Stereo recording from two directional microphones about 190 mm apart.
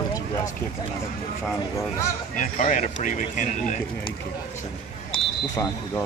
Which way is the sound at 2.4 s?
40° left (ahead or behind).